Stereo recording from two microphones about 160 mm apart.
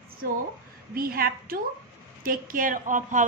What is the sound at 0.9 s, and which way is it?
A woman's voice, 65° right (ahead or behind).